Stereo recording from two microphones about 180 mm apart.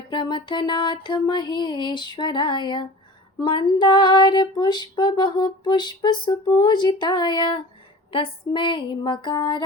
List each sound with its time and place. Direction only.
0.1 s female singing: 25° left (ahead or behind)